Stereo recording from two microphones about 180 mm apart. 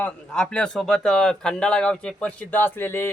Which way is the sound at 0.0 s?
5° left (ahead or behind).